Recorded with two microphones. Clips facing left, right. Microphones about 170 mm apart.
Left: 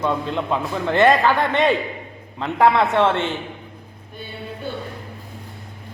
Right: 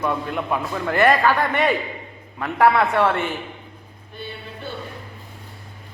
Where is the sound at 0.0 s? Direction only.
20° left (ahead or behind).